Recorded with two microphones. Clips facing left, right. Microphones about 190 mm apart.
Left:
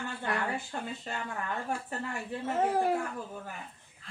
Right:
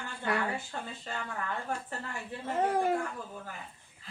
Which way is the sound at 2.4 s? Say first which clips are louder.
Even; 5° left (ahead or behind).